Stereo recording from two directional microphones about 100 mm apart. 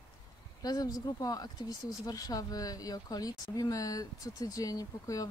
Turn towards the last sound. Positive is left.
turn(degrees=35)  # may be behind; listen again after turning